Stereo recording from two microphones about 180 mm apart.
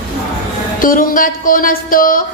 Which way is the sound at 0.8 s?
50° left (ahead or behind).